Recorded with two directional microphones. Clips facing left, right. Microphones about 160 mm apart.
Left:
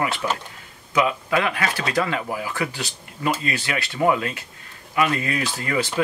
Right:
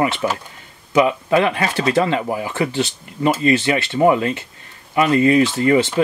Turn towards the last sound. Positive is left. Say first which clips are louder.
# right 10 dB
turn(degrees=-25)  # may be behind; listen again after turning